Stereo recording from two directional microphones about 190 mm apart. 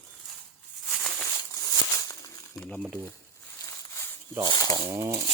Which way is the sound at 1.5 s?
20° left (ahead or behind).